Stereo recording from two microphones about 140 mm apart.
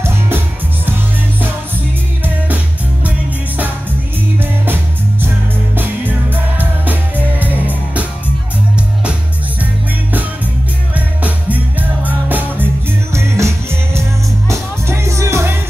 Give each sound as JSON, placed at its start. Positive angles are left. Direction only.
{"t": 2.2, "sound": "music", "side_deg": -10}
{"t": 6.3, "sound": "music", "side_deg": -15}
{"t": 11.0, "sound": "music", "side_deg": -10}